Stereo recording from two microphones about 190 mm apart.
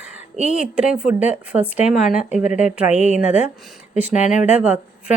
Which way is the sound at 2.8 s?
35° left (ahead or behind).